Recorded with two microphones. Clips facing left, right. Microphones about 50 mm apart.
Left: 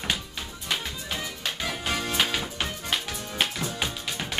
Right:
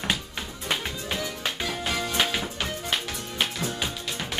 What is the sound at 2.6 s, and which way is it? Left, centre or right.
Music, centre.